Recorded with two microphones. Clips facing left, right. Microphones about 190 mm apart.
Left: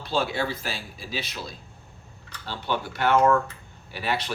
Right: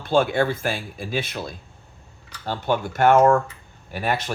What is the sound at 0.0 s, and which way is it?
Speech, 50° right (ahead or behind).